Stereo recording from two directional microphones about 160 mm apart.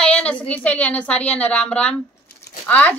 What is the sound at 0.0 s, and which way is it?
A woman's voice, 5° left (ahead or behind).